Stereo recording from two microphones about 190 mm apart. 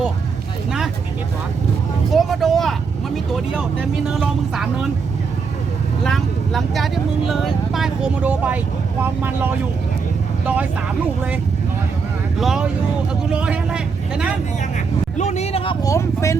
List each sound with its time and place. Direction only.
2.0 s speech: centre (ahead or behind)
6.1 s speech: centre (ahead or behind)
12.4 s speech: centre (ahead or behind)
15.2 s speech: 35° left (ahead or behind); by 16.4 s 15° left (ahead or behind)